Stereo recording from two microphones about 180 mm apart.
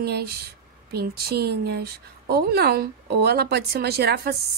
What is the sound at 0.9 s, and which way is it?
Speech, 60° right (ahead or behind).